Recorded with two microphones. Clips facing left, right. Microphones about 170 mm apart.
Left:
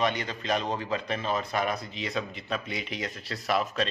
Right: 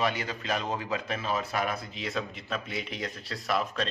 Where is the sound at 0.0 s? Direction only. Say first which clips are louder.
Left 1 dB; 5° right (ahead or behind).